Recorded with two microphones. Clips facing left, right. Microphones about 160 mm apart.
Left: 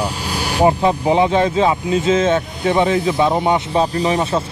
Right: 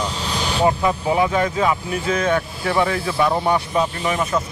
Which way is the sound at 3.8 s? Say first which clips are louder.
Left 4 dB; 35° left (ahead or behind).